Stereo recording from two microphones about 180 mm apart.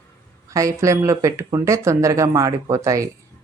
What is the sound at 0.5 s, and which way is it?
Speech, 20° right (ahead or behind).